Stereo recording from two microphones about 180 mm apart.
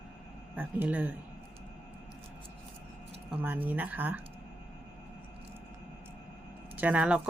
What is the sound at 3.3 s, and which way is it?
Speech, 10° right (ahead or behind).